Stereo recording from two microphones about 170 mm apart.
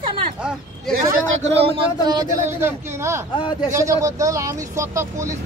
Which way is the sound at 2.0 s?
25° right (ahead or behind).